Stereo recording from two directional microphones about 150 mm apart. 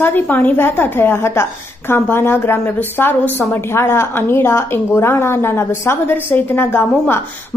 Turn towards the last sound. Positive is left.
turn(degrees=15)  # may be behind; listen again after turning